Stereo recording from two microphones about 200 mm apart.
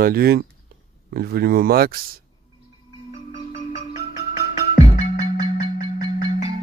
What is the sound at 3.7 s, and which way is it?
Music, 40° left (ahead or behind).